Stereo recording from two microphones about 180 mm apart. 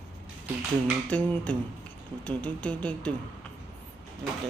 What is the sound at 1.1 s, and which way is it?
Speech, 5° left (ahead or behind).